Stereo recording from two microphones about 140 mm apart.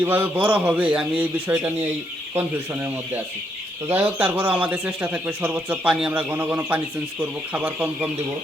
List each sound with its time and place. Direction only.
0.0 s speech: 15° right (ahead or behind)
3.8 s speech: 15° right (ahead or behind)